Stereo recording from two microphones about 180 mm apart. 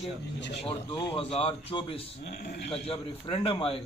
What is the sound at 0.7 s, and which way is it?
A man's voice, 30° left (ahead or behind).